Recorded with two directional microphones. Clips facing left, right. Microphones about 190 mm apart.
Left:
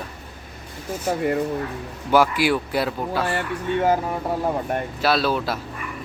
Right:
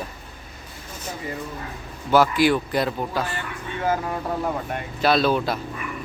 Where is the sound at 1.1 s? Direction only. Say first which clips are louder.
Left 10 dB; 60° left (ahead or behind).